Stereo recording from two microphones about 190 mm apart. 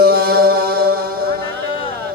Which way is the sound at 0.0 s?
55° right (ahead or behind).